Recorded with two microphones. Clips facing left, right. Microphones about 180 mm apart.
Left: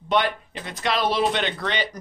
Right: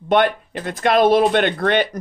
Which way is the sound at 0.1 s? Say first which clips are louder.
Right 6 dB; 55° right (ahead or behind).